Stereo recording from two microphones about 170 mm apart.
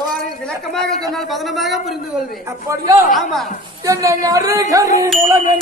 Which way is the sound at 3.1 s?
Centre (ahead or behind).